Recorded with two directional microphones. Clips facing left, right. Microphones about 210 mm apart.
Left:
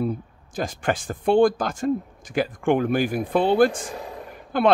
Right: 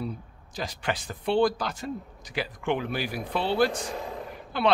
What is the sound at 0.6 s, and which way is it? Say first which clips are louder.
Speech: left 6 dB; 50° left (ahead or behind).